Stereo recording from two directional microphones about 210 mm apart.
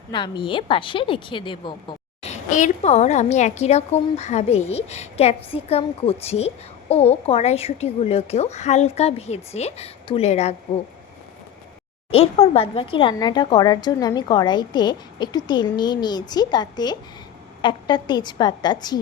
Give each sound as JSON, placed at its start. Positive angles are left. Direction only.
{"t": 0.1, "sound": "a woman's voice", "side_deg": 20}
{"t": 2.2, "sound": "a woman's voice", "side_deg": 35}
{"t": 12.1, "sound": "a woman's voice", "side_deg": 30}